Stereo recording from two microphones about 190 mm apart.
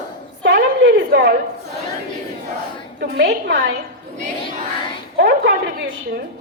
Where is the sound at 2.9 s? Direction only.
55° right (ahead or behind).